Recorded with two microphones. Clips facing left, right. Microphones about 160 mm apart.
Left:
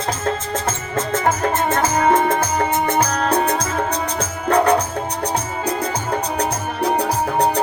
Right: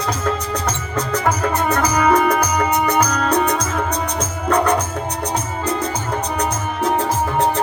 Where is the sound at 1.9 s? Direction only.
25° left (ahead or behind).